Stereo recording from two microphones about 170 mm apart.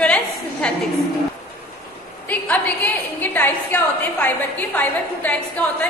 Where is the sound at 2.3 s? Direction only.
10° left (ahead or behind).